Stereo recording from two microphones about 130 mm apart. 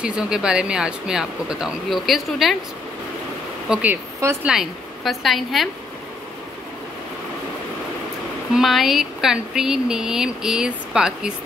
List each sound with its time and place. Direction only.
0.0 s speech: 5° right (ahead or behind)
3.6 s speech: 10° right (ahead or behind)
4.2 s speech: 20° right (ahead or behind)
4.5 s speech: centre (ahead or behind)
8.5 s speech: centre (ahead or behind)